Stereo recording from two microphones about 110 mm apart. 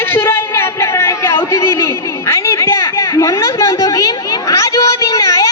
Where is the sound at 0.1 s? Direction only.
20° left (ahead or behind).